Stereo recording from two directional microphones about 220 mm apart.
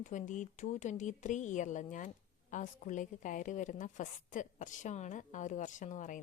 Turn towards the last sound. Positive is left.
turn(degrees=35)  # may be behind; listen again after turning